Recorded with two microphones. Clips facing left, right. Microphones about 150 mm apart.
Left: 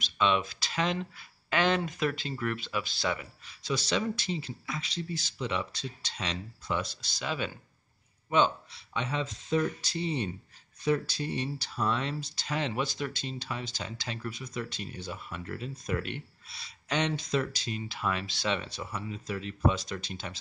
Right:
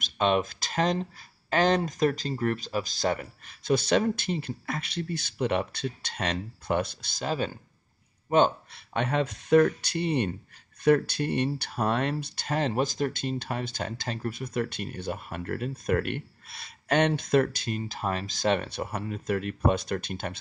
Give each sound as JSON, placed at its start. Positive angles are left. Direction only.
{"t": 0.0, "sound": "speech", "side_deg": -45}
{"t": 8.3, "sound": "speech", "side_deg": -50}